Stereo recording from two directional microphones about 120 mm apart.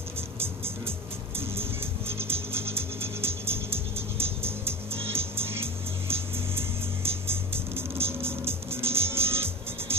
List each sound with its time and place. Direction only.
0.4 s music: 20° right (ahead or behind)